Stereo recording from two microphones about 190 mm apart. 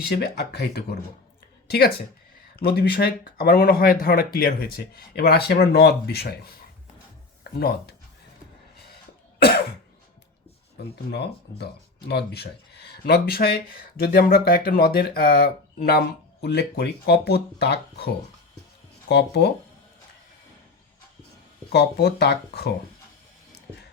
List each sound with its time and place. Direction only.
0.1 s a woman's voice: 60° left (ahead or behind)
7.6 s speech: 55° left (ahead or behind)
10.9 s speech: 60° left (ahead or behind)
21.7 s speech: 60° left (ahead or behind)